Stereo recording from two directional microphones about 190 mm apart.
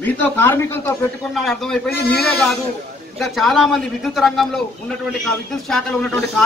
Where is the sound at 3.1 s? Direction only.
Centre (ahead or behind).